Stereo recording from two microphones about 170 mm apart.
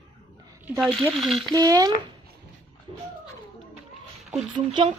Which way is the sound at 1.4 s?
25° right (ahead or behind).